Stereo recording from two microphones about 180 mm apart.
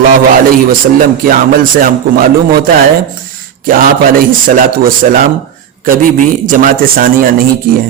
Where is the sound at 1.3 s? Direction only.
50° right (ahead or behind).